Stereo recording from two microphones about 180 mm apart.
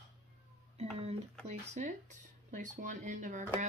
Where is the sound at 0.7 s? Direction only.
35° right (ahead or behind).